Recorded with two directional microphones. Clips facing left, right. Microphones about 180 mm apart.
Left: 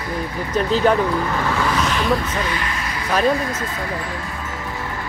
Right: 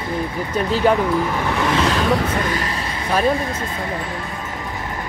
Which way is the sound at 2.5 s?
35° right (ahead or behind).